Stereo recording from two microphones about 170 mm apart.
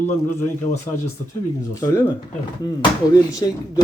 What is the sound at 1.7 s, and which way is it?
Speech, 20° left (ahead or behind).